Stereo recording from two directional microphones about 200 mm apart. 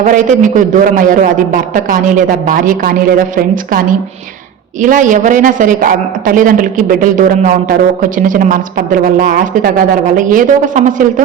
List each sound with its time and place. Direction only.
0.0 s a woman's voice: 40° right (ahead or behind)
4.8 s a woman's voice: 40° right (ahead or behind)